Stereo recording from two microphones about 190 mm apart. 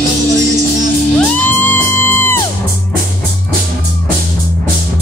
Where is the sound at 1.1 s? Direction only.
10° left (ahead or behind).